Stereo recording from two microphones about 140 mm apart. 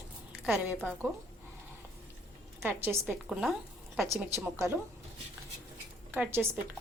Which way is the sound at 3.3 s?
Centre (ahead or behind).